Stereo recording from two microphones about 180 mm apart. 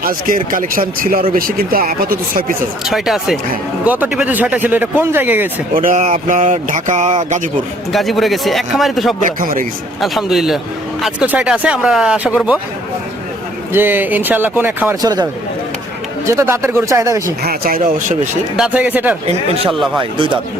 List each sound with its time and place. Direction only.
0.0 s speech: 50° right (ahead or behind)
2.8 s a man's voice: centre (ahead or behind)
5.7 s speech: 45° right (ahead or behind)
7.9 s a man's voice: centre (ahead or behind)
9.2 s speech: 50° right (ahead or behind)
10.0 s a man's voice: centre (ahead or behind)
13.7 s speech: 10° right (ahead or behind)
15.0 s a man's voice: 20° right (ahead or behind)
17.4 s speech: 55° right (ahead or behind)
18.5 s speech: 5° right (ahead or behind)
19.3 s a man's voice: 30° right (ahead or behind)